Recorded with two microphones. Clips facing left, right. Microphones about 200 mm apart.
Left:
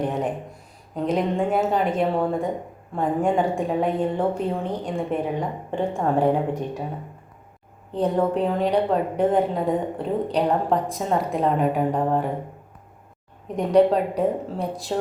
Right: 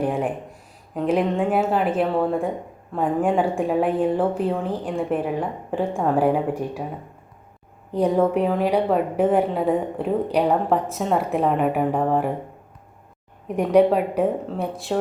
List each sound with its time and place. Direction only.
0.0 s a sound: 10° right (ahead or behind)
1.0 s a woman's voice: 5° right (ahead or behind)
7.9 s a woman's voice: 10° right (ahead or behind)
13.6 s a woman's voice: 10° right (ahead or behind)